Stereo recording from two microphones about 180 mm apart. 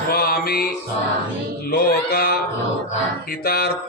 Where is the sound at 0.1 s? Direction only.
55° left (ahead or behind).